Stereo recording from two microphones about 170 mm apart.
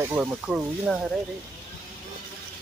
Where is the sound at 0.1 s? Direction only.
10° right (ahead or behind).